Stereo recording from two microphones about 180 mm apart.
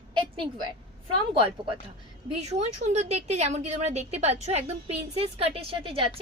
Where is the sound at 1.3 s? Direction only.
30° right (ahead or behind).